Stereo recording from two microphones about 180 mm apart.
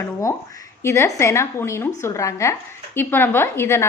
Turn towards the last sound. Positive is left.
turn(degrees=15)  # may be behind; listen again after turning